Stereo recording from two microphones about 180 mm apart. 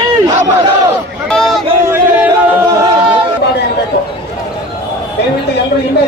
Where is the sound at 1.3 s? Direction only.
Centre (ahead or behind).